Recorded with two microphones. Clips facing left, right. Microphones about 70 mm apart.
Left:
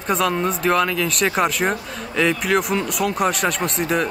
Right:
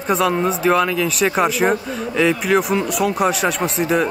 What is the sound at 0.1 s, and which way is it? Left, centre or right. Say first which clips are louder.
Speech: right 3 dB; centre.